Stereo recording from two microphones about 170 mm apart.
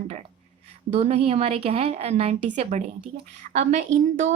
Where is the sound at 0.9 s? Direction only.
40° right (ahead or behind).